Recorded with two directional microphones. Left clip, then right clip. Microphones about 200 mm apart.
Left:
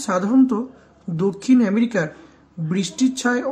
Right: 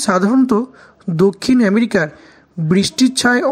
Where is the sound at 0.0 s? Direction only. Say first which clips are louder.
Right 4 dB; 35° right (ahead or behind).